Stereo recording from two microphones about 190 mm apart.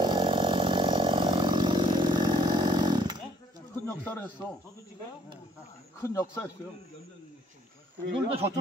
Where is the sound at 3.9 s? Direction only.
10° left (ahead or behind).